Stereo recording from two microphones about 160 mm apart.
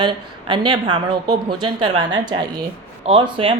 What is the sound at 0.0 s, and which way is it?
Speech, 30° right (ahead or behind).